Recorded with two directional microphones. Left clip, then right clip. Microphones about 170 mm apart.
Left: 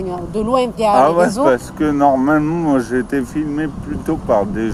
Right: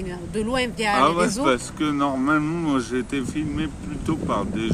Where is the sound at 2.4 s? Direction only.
10° right (ahead or behind).